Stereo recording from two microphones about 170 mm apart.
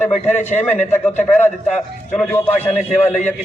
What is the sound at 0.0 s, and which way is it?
Speech, 45° left (ahead or behind).